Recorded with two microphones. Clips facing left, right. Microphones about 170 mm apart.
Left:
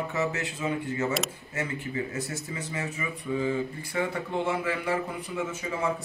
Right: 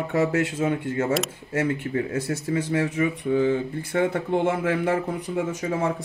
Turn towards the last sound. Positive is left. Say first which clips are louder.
# right 5 dB
turn(degrees=-45)  # may be behind; listen again after turning